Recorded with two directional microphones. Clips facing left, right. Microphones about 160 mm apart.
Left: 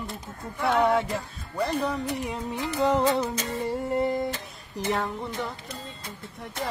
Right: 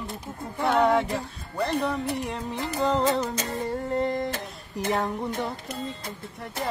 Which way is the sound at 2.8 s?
10° left (ahead or behind).